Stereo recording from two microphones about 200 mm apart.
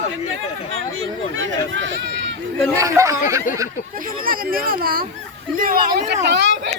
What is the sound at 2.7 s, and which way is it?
Speech, 15° right (ahead or behind).